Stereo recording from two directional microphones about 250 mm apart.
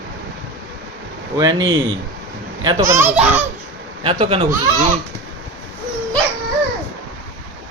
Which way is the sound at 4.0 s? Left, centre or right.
Right.